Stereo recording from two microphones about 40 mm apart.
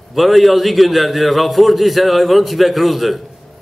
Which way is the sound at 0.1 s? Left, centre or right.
Centre.